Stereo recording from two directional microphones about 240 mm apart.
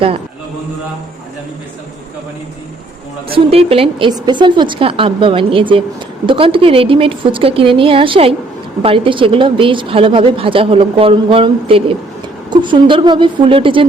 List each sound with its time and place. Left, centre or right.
3.3 s a woman's voice: right